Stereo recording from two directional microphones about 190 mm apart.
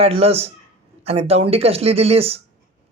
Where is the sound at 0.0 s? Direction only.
30° right (ahead or behind).